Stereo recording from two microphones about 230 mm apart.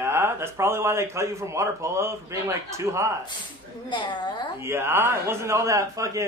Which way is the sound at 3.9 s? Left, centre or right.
Left.